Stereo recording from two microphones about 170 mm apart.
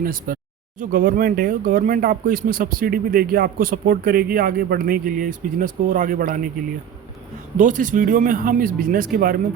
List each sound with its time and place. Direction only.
0.0 s speech: 55° right (ahead or behind)
7.5 s speech: 50° right (ahead or behind)